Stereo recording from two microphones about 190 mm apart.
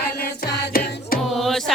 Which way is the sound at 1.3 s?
Centre (ahead or behind).